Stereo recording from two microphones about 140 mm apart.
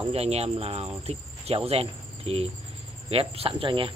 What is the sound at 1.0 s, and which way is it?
Cricket, 45° right (ahead or behind).